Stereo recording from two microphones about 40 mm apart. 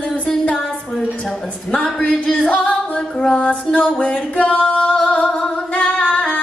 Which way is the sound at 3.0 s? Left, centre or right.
Centre.